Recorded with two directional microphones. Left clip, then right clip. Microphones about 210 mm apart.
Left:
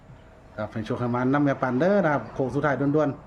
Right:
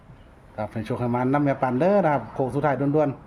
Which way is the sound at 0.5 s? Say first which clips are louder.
Right 1 dB; 15° right (ahead or behind).